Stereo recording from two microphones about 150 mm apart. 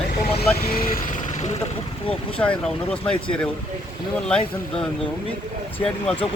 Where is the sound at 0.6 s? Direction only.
75° left (ahead or behind); by 1.6 s 50° left (ahead or behind).